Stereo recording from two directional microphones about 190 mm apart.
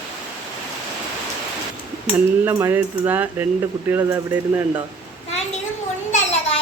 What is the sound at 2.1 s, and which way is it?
Speech, 10° right (ahead or behind).